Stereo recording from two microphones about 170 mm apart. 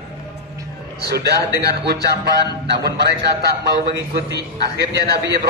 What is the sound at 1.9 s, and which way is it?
Music, 20° left (ahead or behind).